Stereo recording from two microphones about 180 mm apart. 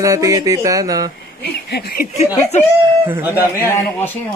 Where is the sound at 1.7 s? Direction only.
60° left (ahead or behind).